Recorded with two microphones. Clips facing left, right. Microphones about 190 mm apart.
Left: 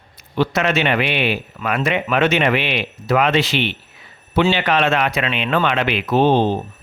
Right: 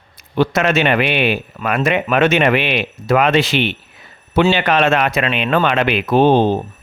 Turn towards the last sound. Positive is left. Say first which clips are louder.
# right 3 dB
turn(degrees=-50)  # may be behind; listen again after turning